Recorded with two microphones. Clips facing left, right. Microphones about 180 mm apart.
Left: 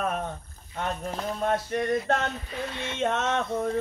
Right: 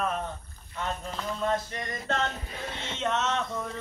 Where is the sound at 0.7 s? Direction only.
50° left (ahead or behind).